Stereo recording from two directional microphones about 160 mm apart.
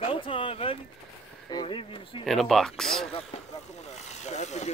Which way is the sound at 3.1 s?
35° left (ahead or behind).